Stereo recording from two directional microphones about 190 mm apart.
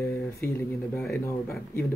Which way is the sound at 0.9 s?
10° left (ahead or behind).